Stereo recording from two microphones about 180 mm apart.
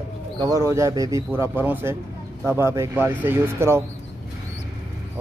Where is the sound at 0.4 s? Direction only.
20° right (ahead or behind).